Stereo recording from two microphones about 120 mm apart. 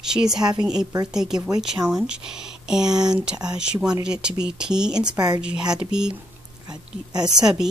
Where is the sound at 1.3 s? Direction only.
30° right (ahead or behind).